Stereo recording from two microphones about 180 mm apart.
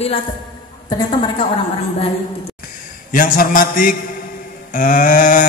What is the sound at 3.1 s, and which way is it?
A man's voice, 50° left (ahead or behind).